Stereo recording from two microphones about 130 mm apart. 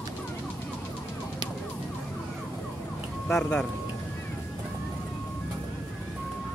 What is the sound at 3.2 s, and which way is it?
Speech, 5° left (ahead or behind).